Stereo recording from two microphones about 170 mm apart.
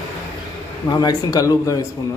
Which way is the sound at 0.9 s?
20° left (ahead or behind).